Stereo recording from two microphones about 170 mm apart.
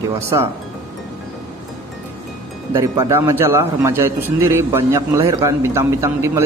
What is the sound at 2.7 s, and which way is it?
A man's voice, 15° right (ahead or behind).